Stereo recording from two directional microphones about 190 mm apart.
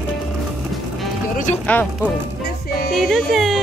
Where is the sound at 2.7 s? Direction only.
55° left (ahead or behind).